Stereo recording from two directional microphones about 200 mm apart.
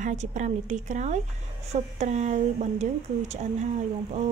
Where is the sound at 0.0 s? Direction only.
35° right (ahead or behind).